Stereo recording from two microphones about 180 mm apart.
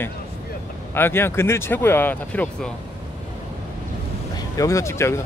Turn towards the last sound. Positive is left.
turn(degrees=15)  # may be behind; listen again after turning